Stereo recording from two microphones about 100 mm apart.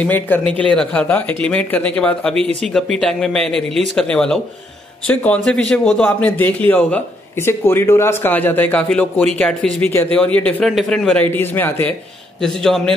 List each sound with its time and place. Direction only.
0.0 s a man's voice: 15° left (ahead or behind)
11.2 s a man's voice: 20° left (ahead or behind)
12.4 s speech: 5° left (ahead or behind)